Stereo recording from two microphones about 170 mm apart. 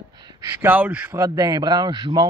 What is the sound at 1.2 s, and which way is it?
Speech, 20° right (ahead or behind).